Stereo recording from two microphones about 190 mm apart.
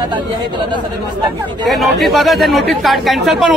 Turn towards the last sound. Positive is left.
turn(degrees=0)  # may be behind; listen again after turning